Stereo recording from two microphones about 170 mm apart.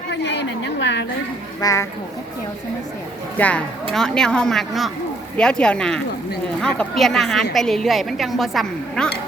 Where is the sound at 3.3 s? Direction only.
10° left (ahead or behind).